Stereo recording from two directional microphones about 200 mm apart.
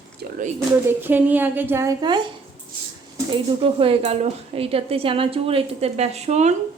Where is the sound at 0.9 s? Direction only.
10° right (ahead or behind).